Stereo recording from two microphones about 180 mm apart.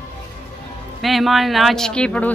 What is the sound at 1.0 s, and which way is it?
Speech, centre (ahead or behind).